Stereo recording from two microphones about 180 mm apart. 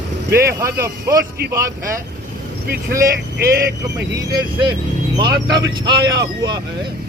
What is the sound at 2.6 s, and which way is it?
Speech, 60° right (ahead or behind).